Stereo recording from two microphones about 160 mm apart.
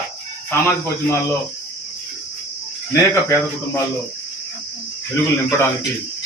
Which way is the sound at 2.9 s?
20° left (ahead or behind).